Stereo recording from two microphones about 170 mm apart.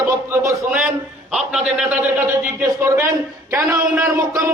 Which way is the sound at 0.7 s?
5° right (ahead or behind).